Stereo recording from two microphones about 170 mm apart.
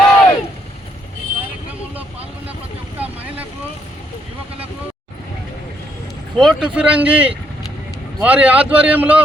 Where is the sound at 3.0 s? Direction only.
10° right (ahead or behind).